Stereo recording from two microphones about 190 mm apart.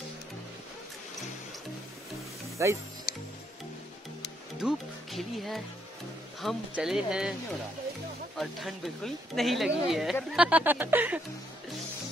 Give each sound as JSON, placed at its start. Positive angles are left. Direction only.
{"t": 2.6, "sound": "speech", "side_deg": -15}
{"t": 3.1, "sound": "music", "side_deg": 50}
{"t": 4.6, "sound": "speech", "side_deg": 0}
{"t": 8.4, "sound": "speech", "side_deg": 0}